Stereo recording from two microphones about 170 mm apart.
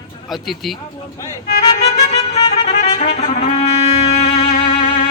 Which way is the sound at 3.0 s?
45° left (ahead or behind).